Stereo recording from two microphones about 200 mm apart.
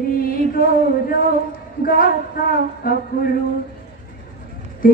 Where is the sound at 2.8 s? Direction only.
45° left (ahead or behind).